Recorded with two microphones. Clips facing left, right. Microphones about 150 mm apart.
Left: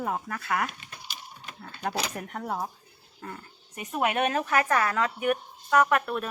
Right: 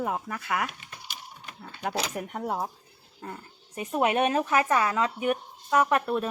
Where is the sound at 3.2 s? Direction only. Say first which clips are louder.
Right 1 dB; 25° right (ahead or behind).